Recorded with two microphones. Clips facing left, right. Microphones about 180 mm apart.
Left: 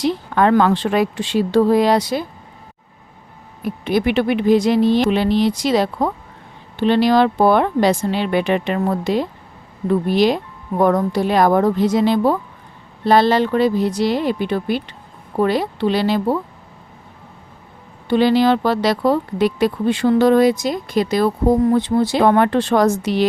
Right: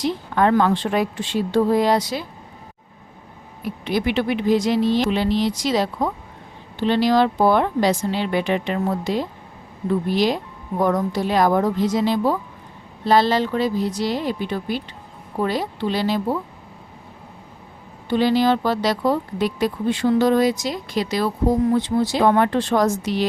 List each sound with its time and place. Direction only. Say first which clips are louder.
0.0 s a woman's voice: left 3 dB; 80° left; by 2.2 s 60° left (ahead or behind)
3.6 s speech: left 4 dB; 50° left (ahead or behind); by 16.4 s 70° left (ahead or behind)
18.1 s speech: left 3 dB; 70° left (ahead or behind)